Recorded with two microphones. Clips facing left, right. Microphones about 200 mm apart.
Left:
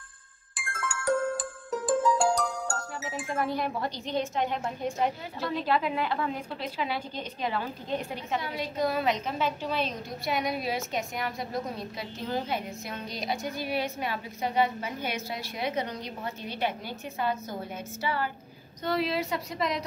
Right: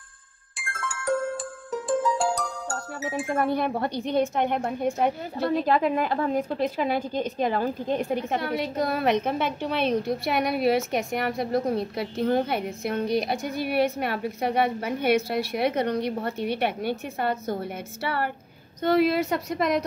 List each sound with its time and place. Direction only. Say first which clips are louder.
0.6 s music: right 1 dB; centre (ahead or behind)
3.0 s a woman's voice: right 7 dB; 55° right (ahead or behind)